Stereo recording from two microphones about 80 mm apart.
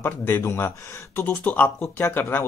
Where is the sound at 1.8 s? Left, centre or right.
Left.